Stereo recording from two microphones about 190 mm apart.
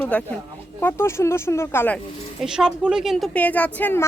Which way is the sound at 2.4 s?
5° right (ahead or behind).